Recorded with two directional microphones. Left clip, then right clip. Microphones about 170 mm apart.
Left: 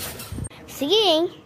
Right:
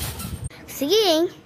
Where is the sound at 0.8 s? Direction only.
10° right (ahead or behind).